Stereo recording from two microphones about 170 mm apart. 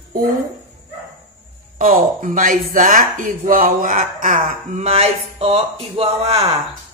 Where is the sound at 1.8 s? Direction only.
55° right (ahead or behind); by 6.5 s 35° right (ahead or behind).